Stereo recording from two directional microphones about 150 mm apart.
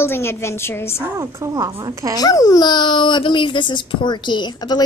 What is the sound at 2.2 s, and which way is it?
Speech, 25° left (ahead or behind).